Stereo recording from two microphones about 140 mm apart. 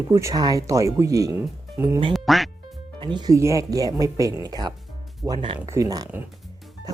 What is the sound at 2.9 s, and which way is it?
Speech, 35° right (ahead or behind).